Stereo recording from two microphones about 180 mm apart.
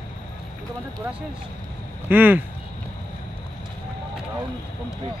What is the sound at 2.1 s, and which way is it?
Speech, 10° right (ahead or behind).